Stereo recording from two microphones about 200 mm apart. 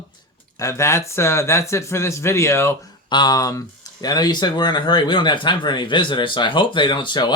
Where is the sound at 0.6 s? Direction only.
15° left (ahead or behind).